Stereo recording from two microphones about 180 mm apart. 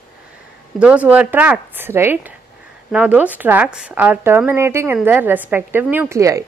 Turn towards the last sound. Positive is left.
turn(degrees=-15)  # may be behind; listen again after turning